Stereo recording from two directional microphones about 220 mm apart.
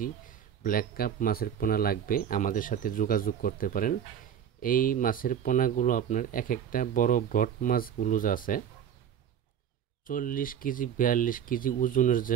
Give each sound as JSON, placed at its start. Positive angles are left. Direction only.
{"t": 0.7, "sound": "speech", "side_deg": 40}
{"t": 10.0, "sound": "speech", "side_deg": 40}